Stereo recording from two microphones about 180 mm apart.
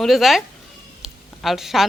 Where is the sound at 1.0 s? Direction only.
Centre (ahead or behind).